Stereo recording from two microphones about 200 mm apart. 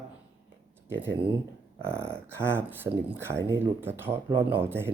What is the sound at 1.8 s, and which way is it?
Speech, 10° right (ahead or behind).